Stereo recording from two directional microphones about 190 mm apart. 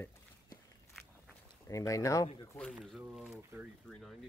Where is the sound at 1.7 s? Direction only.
15° left (ahead or behind).